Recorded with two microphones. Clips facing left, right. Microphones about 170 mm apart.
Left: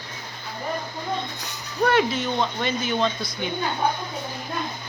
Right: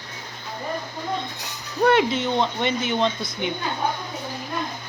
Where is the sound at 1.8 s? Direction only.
25° right (ahead or behind).